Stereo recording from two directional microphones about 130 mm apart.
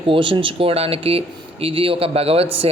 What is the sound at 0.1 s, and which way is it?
A man's voice, 40° right (ahead or behind).